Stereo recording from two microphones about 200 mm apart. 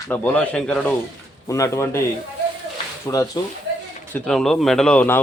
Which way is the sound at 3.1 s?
15° left (ahead or behind).